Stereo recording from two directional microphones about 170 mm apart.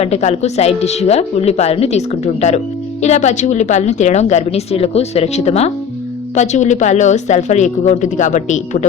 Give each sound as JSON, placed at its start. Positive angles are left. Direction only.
{"t": 0.0, "sound": "a woman's voice", "side_deg": 40}